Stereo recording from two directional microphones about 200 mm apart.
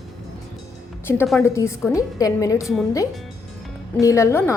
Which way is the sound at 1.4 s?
15° left (ahead or behind).